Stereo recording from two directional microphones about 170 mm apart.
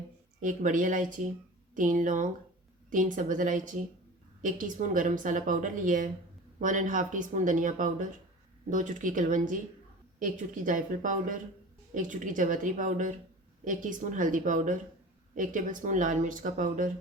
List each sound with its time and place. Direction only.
0.4 s speech: 50° right (ahead or behind)